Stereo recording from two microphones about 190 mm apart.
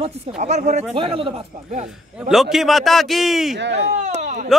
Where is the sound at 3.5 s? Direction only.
65° right (ahead or behind).